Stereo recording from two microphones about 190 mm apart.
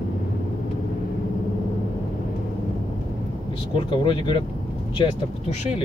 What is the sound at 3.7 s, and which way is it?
Speech, 25° left (ahead or behind).